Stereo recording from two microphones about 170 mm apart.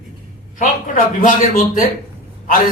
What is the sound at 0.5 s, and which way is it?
A man's voice, 50° left (ahead or behind).